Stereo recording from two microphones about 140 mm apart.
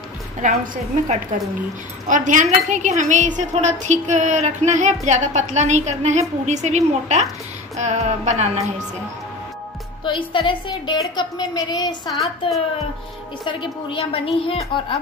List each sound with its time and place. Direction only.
0.4 s speech: 65° right (ahead or behind)
10.0 s a woman's voice: 35° left (ahead or behind)
12.1 s a woman's voice: centre (ahead or behind)
13.5 s a woman's voice: 35° left (ahead or behind)